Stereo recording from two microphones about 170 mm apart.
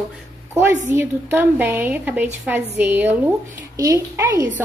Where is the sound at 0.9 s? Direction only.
10° right (ahead or behind).